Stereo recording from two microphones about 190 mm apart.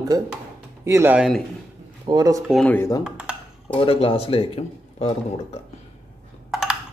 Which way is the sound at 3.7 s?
30° left (ahead or behind).